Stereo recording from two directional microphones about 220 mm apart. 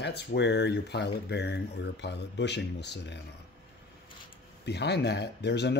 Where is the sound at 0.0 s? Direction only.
50° left (ahead or behind).